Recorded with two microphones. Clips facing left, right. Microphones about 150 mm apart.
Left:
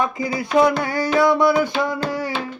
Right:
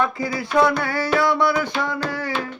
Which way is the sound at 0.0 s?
20° left (ahead or behind).